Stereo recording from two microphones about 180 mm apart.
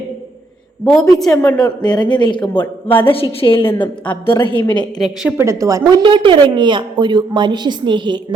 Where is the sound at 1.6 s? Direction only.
20° left (ahead or behind).